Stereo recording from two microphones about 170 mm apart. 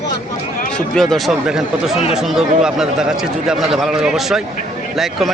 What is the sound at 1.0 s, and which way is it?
A man's voice, centre (ahead or behind).